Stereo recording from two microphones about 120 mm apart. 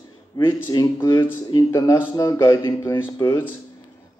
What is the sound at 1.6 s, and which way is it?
Speech, 30° left (ahead or behind).